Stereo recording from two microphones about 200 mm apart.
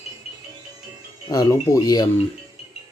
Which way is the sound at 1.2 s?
15° left (ahead or behind).